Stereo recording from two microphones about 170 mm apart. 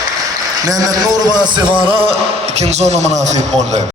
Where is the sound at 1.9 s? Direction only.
35° right (ahead or behind).